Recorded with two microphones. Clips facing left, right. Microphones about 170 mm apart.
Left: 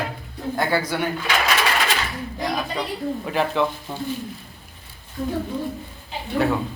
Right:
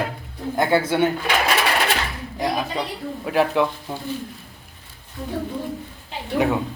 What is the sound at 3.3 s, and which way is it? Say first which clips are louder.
Speech: right 4 dB; 5° right (ahead or behind).